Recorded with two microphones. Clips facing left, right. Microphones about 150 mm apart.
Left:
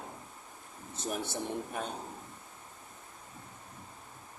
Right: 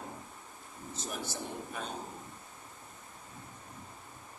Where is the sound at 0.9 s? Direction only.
60° left (ahead or behind).